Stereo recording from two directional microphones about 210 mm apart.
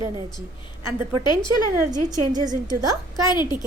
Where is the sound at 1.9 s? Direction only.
35° right (ahead or behind).